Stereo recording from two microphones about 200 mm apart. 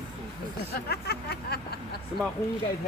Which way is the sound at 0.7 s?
50° left (ahead or behind).